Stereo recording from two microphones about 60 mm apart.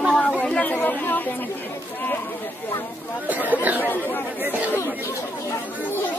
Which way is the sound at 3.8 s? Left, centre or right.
Left.